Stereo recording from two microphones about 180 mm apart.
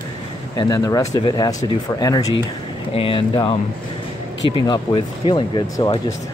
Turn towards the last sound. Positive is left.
turn(degrees=25)  # may be behind; listen again after turning